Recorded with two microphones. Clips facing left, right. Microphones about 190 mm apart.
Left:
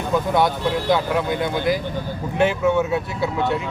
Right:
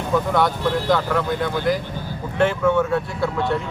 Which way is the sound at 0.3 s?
15° left (ahead or behind).